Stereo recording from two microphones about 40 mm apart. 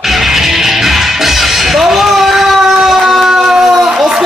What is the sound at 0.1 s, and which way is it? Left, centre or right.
Music, centre.